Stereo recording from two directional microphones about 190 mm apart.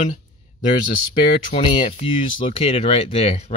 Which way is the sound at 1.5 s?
25° left (ahead or behind).